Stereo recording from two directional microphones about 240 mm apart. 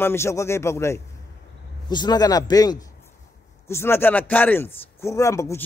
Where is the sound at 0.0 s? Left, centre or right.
Centre.